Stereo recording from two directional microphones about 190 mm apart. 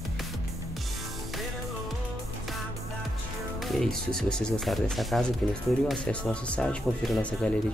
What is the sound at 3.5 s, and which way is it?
Speech, centre (ahead or behind).